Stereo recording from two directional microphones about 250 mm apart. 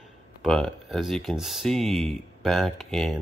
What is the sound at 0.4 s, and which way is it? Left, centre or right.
Speech, centre.